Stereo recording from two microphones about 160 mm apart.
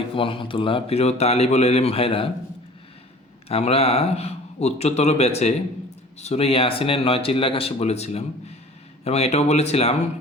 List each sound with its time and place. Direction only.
0.2 s speech: 35° left (ahead or behind)
3.5 s speech: 40° left (ahead or behind)